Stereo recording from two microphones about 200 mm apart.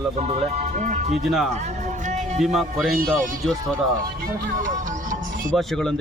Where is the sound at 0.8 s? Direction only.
40° right (ahead or behind).